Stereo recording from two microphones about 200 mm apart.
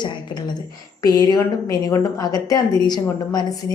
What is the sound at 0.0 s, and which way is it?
A woman's voice, 20° left (ahead or behind).